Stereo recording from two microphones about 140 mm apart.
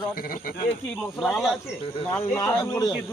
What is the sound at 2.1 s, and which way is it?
Speech, 20° left (ahead or behind).